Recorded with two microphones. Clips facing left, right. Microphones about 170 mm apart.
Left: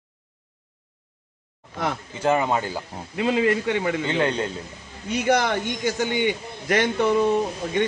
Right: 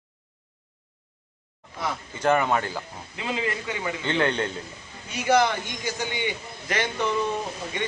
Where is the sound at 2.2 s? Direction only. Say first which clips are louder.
Left 1 dB; 20° left (ahead or behind).